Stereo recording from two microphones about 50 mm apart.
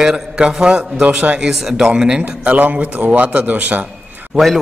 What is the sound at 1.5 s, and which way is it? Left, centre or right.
Speech, centre.